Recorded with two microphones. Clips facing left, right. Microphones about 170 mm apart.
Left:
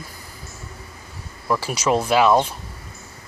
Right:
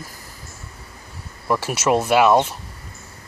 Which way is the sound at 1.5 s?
5° right (ahead or behind).